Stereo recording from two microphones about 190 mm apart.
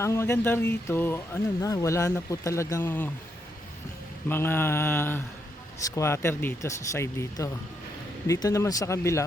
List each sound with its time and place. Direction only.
0.0 s speech: 15° left (ahead or behind)
4.3 s speech: 10° left (ahead or behind)